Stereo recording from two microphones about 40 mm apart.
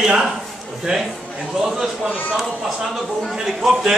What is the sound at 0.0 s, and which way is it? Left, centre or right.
A man's voice, centre.